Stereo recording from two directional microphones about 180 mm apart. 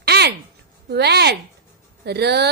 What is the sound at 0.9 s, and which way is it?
Speech, 65° right (ahead or behind).